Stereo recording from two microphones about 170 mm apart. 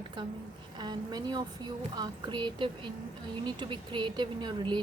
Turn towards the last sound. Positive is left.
turn(degrees=-25)  # may be behind; listen again after turning